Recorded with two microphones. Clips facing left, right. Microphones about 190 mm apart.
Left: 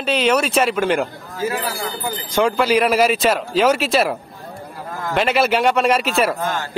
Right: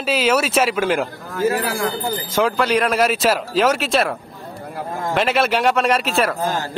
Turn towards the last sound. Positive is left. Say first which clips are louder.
# right 1 dB
turn(degrees=-40)  # may be behind; listen again after turning